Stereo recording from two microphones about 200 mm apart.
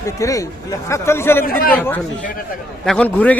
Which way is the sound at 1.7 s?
10° left (ahead or behind).